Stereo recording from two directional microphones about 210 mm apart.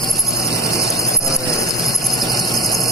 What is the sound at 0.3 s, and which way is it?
Vehicle, 15° left (ahead or behind).